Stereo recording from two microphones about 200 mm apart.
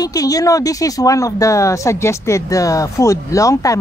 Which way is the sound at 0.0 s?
15° left (ahead or behind).